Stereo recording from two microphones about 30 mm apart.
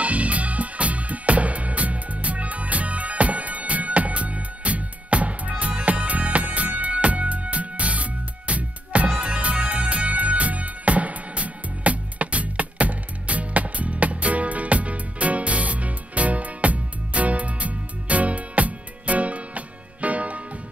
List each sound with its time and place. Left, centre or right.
0.0 s music: right